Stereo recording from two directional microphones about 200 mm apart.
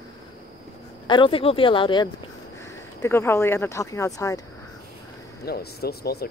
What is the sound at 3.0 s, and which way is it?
Speech, 10° left (ahead or behind).